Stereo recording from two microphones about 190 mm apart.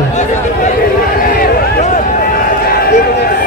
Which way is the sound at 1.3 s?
35° left (ahead or behind).